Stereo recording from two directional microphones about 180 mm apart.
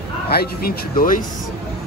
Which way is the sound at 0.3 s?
60° left (ahead or behind).